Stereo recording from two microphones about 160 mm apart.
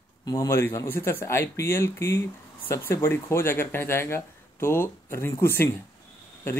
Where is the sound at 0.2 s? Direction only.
20° left (ahead or behind).